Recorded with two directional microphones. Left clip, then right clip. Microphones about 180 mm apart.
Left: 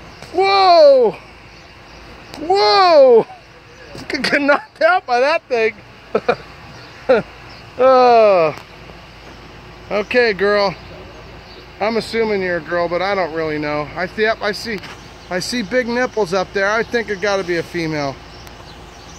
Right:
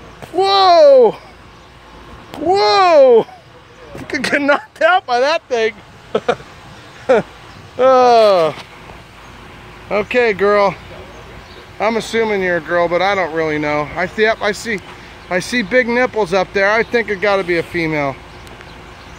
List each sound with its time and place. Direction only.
0.4 s a sound: 35° right (ahead or behind)
2.5 s a child's voice: 30° right (ahead or behind)
7.8 s speech: 25° right (ahead or behind)
9.8 s speech: 5° right (ahead or behind)
11.8 s speech: 15° right (ahead or behind)